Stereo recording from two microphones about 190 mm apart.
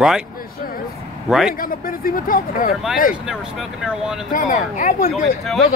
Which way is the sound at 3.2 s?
Centre (ahead or behind).